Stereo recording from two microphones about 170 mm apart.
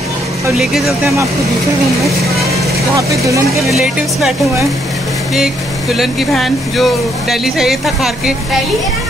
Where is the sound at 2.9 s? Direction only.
20° right (ahead or behind).